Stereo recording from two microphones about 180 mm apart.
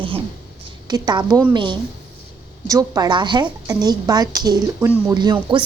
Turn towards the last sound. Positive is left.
turn(degrees=-25)  # may be behind; listen again after turning